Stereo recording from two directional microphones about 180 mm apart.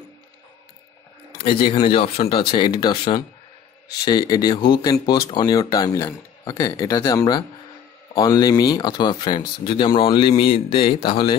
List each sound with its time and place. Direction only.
1.4 s speech: 30° left (ahead or behind)